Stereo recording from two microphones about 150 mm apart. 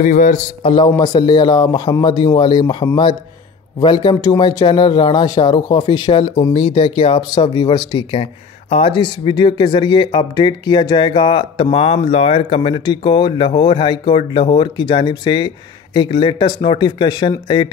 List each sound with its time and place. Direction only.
0.0 s a man's voice: 60° left (ahead or behind)
0.7 s speech: 35° left (ahead or behind)
0.9 s speech: 25° left (ahead or behind)